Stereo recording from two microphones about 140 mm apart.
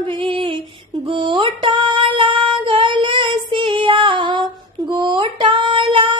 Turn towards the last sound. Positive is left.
turn(degrees=-35)  # may be behind; listen again after turning